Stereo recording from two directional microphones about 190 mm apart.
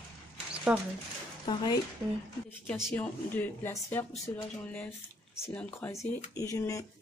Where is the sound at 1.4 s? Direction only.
25° left (ahead or behind).